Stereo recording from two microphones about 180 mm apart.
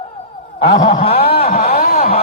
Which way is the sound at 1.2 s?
35° left (ahead or behind).